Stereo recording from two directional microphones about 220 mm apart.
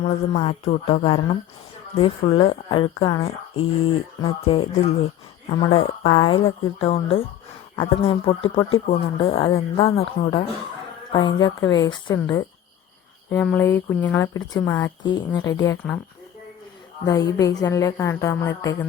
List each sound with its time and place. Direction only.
0.0 s speech: 25° left (ahead or behind)
13.3 s speech: 5° left (ahead or behind)
17.3 s speech: 15° left (ahead or behind)